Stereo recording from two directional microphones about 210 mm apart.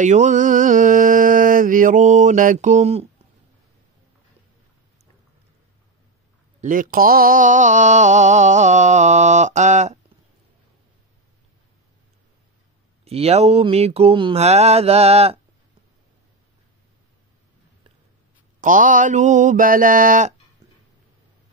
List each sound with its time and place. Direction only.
0.0 s mantra: 35° right (ahead or behind)
6.6 s mantra: 40° right (ahead or behind)
13.0 s a sound: 30° right (ahead or behind)
18.6 s mantra: 40° right (ahead or behind)